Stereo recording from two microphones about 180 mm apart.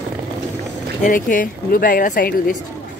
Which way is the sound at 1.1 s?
50° left (ahead or behind).